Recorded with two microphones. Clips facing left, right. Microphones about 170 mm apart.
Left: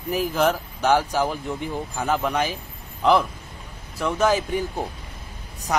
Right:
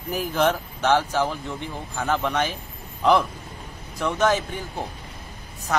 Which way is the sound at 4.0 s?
5° left (ahead or behind).